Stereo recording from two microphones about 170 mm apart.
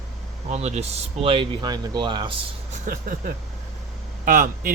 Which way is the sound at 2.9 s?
55° right (ahead or behind).